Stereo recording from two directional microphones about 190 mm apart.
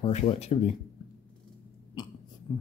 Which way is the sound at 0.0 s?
35° left (ahead or behind).